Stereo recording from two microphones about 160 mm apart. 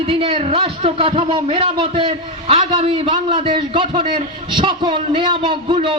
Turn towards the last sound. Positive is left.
turn(degrees=-30)  # may be behind; listen again after turning